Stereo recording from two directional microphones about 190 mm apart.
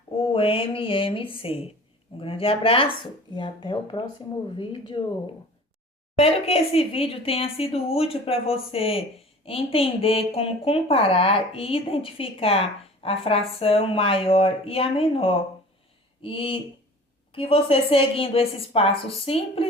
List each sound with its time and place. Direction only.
0.1 s a woman's voice: 30° left (ahead or behind)